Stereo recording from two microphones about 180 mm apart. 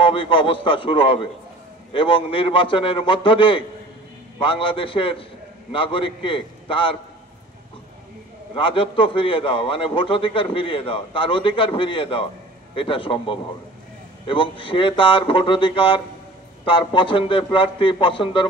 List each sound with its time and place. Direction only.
0.0 s a man's voice: 30° left (ahead or behind)
8.5 s a man's voice: 30° left (ahead or behind)